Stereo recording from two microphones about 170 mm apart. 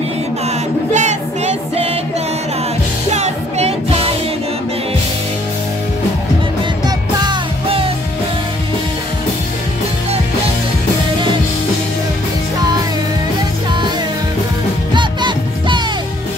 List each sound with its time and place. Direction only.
0.9 s music: 40° right (ahead or behind)
3.1 s music: 40° right (ahead or behind)
7.2 s music: 30° right (ahead or behind)
15.0 s music: 25° right (ahead or behind)